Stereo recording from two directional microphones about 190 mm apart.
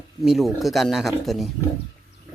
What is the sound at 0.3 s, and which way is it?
Speech, centre (ahead or behind).